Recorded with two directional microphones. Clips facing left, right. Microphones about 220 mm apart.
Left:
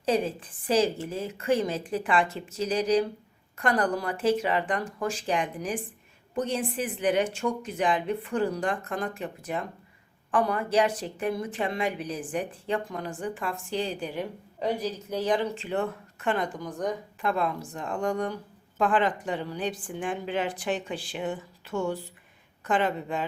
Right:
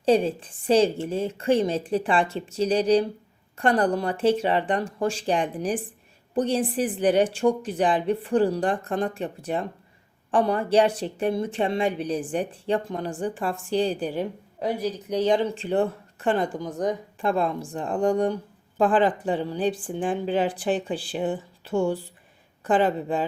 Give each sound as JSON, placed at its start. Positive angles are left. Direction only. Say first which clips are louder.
{"t": 0.0, "sound": "a woman's voice", "louder": "right 6 dB", "side_deg": -30}
{"t": 14.6, "sound": "a woman's voice", "louder": "right 2 dB", "side_deg": -10}
{"t": 15.2, "sound": "speech", "louder": "right 5 dB", "side_deg": -25}